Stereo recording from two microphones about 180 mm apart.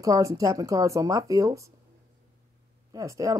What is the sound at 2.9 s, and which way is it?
Speech, 20° right (ahead or behind).